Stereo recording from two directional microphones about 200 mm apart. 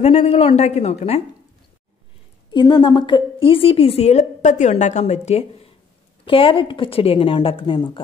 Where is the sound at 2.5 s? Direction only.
20° left (ahead or behind).